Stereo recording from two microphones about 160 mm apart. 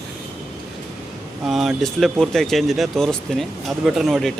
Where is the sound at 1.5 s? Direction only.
Centre (ahead or behind).